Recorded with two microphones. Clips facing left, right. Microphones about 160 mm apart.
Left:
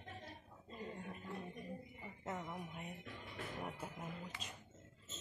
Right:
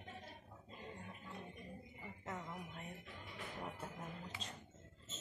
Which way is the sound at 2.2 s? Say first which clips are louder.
Left 3 dB; 20° left (ahead or behind).